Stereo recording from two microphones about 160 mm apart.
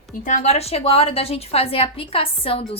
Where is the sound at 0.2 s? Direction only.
50° left (ahead or behind).